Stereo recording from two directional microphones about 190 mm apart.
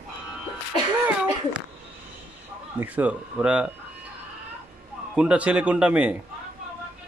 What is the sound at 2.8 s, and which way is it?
Speech, 10° right (ahead or behind).